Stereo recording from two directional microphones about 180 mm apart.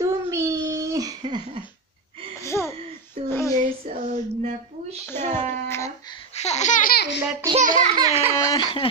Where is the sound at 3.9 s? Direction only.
35° right (ahead or behind).